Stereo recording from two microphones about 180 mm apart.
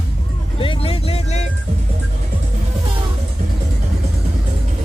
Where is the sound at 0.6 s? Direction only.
30° left (ahead or behind).